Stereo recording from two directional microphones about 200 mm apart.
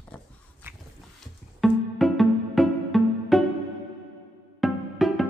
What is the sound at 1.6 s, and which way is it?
Music, centre (ahead or behind).